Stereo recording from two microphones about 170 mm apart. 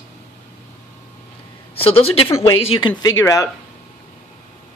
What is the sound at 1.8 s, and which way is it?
Speech, 35° left (ahead or behind).